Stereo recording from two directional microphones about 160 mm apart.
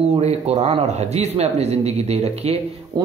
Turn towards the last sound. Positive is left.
turn(degrees=-25)  # may be behind; listen again after turning